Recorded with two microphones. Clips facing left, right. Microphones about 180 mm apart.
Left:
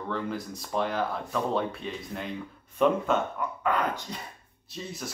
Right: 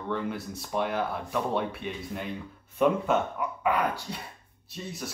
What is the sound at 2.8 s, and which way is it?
Speech, 10° right (ahead or behind).